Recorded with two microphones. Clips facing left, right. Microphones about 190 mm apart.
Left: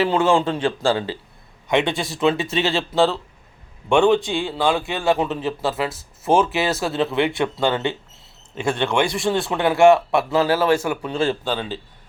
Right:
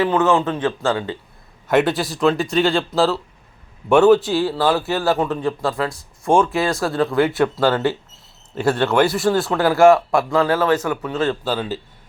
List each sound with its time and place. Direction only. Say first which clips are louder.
0.0 s a man's voice: right 1 dB; 30° left (ahead or behind)
1.6 s a man's voice: right 3 dB; 5° right (ahead or behind)
10.3 s a man's voice: right 1 dB; 25° left (ahead or behind)
10.6 s a man's voice: even; 10° left (ahead or behind)
10.8 s a man's voice: right 1 dB; 25° left (ahead or behind)
11.4 s a man's voice: right 2 dB; 5° right (ahead or behind)